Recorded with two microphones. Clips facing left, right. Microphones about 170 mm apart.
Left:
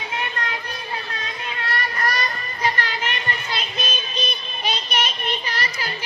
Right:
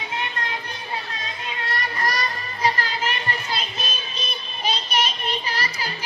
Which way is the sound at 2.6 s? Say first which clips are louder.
Right 1 dB; 35° right (ahead or behind).